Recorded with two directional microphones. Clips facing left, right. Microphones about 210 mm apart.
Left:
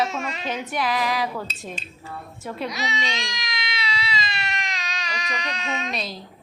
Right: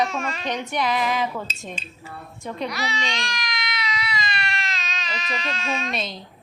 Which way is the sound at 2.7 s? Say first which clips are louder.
Even; 20° left (ahead or behind).